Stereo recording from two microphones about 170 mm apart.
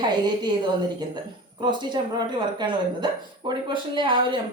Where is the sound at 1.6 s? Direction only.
25° right (ahead or behind).